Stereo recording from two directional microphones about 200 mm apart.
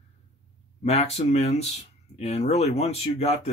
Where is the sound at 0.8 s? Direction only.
30° left (ahead or behind).